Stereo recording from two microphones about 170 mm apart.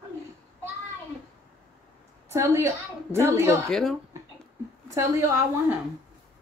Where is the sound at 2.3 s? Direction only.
15° right (ahead or behind).